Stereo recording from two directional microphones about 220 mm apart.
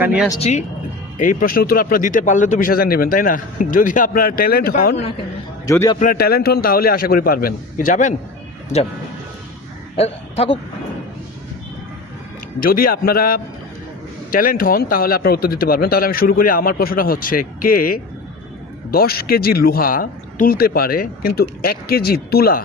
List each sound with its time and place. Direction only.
0.0 s speech: 5° right (ahead or behind)
0.3 s a man's voice: 30° left (ahead or behind)
5.6 s a man's voice: 15° left (ahead or behind)
6.0 s a man's voice: 40° left (ahead or behind)
10.0 s a man's voice: 25° left (ahead or behind)
12.5 s a man's voice: 40° left (ahead or behind)